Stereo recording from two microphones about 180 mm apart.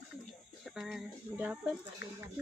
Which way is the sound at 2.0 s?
70° left (ahead or behind).